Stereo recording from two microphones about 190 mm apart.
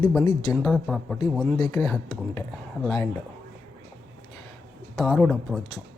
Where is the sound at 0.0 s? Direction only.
10° left (ahead or behind).